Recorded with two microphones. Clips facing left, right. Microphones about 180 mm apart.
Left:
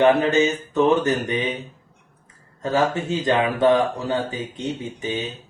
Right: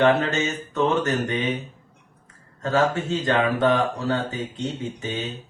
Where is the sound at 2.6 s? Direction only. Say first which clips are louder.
Left 1 dB; 20° left (ahead or behind).